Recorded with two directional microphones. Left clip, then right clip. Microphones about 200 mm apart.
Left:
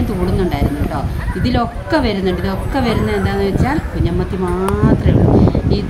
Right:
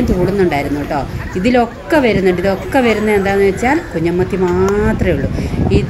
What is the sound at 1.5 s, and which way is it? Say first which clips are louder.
A woman's voice: right 4 dB; 10° right (ahead or behind).